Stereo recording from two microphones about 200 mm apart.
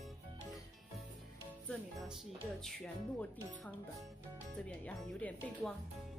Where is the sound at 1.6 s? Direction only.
Centre (ahead or behind).